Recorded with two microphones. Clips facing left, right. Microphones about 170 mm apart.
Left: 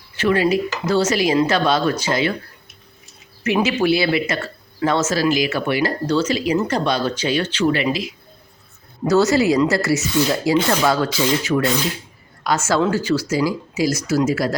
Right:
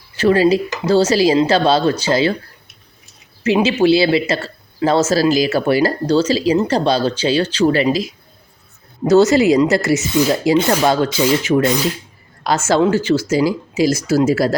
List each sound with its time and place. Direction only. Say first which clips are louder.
0.2 s speech: right 4 dB; 35° right (ahead or behind)
3.4 s speech: right 4 dB; 30° right (ahead or behind)
9.0 s a woman's voice: right 4 dB; 20° right (ahead or behind)